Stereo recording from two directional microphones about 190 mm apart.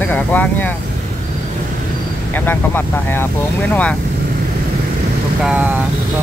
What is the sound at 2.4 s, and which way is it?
Speech, 10° left (ahead or behind).